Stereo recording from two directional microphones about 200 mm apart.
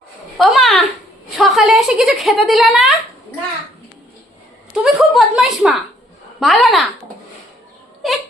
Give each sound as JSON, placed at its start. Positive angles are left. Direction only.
{"t": 0.3, "sound": "a sound", "side_deg": 0}
{"t": 1.4, "sound": "speech", "side_deg": 0}
{"t": 4.7, "sound": "speech", "side_deg": 0}
{"t": 8.0, "sound": "speech", "side_deg": 0}